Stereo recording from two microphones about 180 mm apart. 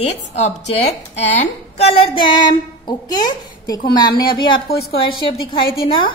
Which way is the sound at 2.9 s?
20° left (ahead or behind).